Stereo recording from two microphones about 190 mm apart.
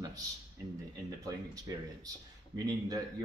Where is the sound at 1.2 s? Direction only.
20° right (ahead or behind).